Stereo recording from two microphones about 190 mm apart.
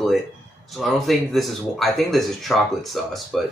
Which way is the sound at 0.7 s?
Centre (ahead or behind).